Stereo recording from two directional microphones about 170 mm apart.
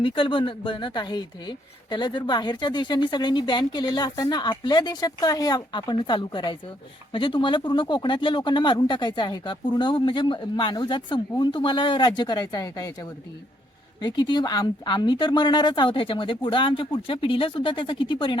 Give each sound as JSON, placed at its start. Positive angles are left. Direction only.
{"t": 0.0, "sound": "speech", "side_deg": 30}